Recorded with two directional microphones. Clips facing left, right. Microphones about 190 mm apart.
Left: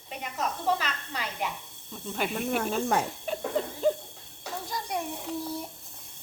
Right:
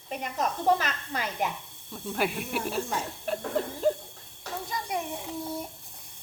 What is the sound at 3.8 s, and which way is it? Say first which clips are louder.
Speech: even; centre (ahead or behind).